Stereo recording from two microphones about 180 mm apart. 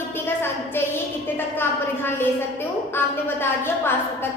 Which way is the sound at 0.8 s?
10° left (ahead or behind).